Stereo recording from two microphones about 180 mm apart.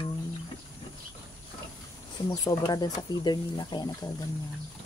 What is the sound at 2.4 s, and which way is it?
Speech, 20° left (ahead or behind).